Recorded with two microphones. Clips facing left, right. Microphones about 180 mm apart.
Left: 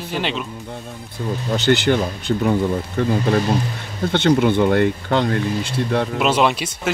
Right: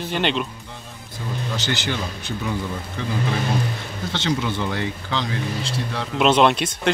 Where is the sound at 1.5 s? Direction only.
50° left (ahead or behind).